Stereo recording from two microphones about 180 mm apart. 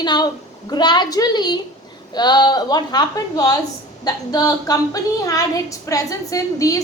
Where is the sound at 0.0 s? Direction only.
25° left (ahead or behind).